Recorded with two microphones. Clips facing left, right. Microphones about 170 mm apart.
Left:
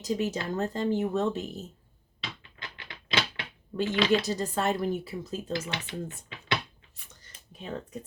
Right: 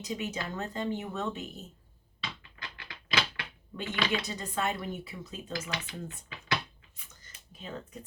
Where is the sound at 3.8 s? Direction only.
30° left (ahead or behind).